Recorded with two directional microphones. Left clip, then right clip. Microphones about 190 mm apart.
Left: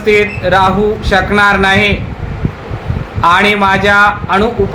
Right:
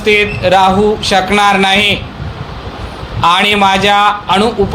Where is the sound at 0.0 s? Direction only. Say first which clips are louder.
Even; 30° right (ahead or behind).